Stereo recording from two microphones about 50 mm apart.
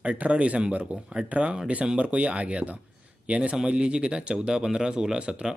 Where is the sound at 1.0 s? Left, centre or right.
Centre.